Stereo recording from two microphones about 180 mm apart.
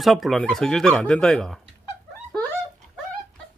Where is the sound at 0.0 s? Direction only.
Centre (ahead or behind).